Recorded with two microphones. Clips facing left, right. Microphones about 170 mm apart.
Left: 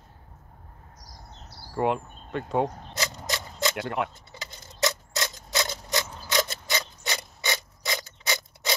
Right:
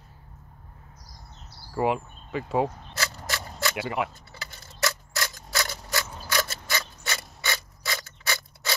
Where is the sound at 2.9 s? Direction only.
20° left (ahead or behind).